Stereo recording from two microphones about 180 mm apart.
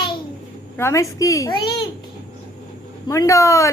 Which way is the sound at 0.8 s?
15° left (ahead or behind).